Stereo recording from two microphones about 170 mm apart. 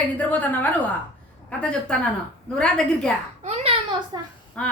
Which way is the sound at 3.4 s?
40° right (ahead or behind).